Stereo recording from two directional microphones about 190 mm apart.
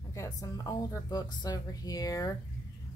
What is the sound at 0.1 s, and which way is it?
A woman's voice, 15° left (ahead or behind).